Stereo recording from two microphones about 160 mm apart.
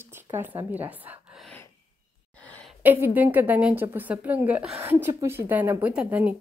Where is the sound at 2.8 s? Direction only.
10° right (ahead or behind).